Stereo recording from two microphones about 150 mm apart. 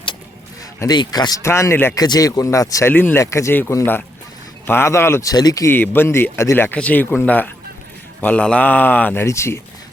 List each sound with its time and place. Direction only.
0.8 s a man's voice: 25° left (ahead or behind)